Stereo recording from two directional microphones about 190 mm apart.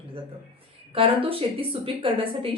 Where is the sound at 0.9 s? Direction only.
30° right (ahead or behind).